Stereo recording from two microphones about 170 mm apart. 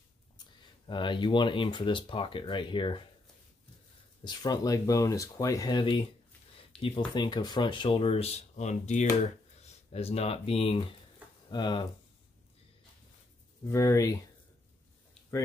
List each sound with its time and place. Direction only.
0.8 s speech: 30° left (ahead or behind)
4.2 s speech: 25° left (ahead or behind)
6.7 s a sound: 5° left (ahead or behind)
7.2 s speech: 25° left (ahead or behind)
13.7 s speech: 20° left (ahead or behind)